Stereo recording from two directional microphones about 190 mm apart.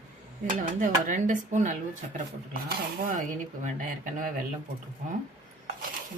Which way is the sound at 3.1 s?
40° right (ahead or behind).